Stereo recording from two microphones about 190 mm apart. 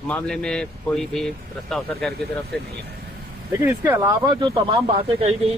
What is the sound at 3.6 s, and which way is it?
Speech, 10° right (ahead or behind).